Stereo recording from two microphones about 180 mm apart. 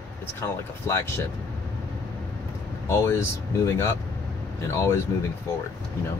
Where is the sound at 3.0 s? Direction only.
15° left (ahead or behind).